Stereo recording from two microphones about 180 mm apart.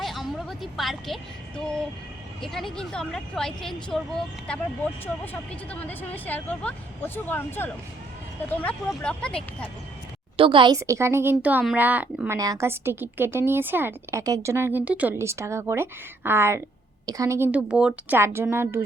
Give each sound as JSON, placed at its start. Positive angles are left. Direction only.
{"t": 0.0, "sound": "a woman's voice", "side_deg": 0}
{"t": 5.2, "sound": "speech", "side_deg": 10}
{"t": 10.3, "sound": "a woman's voice", "side_deg": -30}
{"t": 10.8, "sound": "a woman's voice", "side_deg": -15}